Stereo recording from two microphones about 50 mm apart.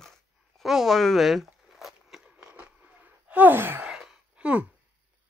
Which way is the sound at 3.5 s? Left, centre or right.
Right.